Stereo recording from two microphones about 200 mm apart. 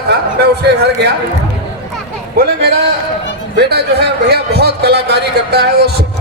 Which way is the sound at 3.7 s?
55° right (ahead or behind).